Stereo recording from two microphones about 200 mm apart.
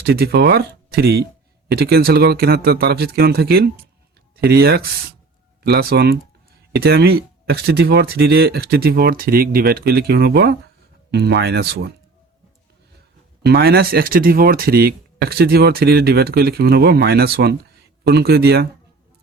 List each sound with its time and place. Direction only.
0.0 s speech: 55° right (ahead or behind)
13.4 s speech: 50° right (ahead or behind)